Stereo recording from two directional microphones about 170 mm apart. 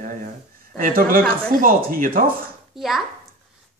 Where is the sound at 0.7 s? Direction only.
55° right (ahead or behind).